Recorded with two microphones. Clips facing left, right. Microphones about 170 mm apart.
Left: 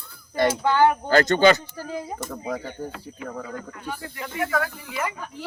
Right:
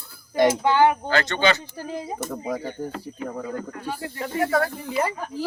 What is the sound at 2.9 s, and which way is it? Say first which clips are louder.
Speech: right 3 dB; 40° right (ahead or behind).